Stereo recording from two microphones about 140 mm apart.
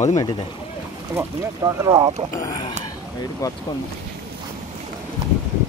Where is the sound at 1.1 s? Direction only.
20° right (ahead or behind).